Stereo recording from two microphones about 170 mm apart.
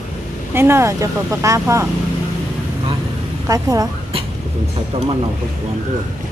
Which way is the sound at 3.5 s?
20° right (ahead or behind).